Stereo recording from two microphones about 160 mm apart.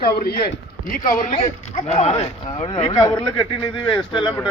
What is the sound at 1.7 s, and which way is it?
Speech, 45° left (ahead or behind).